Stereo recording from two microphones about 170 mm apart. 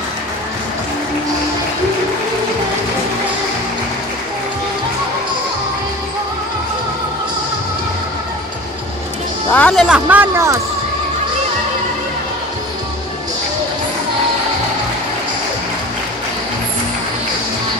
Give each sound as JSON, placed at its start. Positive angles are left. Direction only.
{"t": 9.5, "sound": "speech", "side_deg": 5}